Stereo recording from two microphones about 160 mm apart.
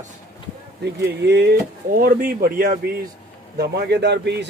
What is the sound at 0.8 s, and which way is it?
Speech, 90° right.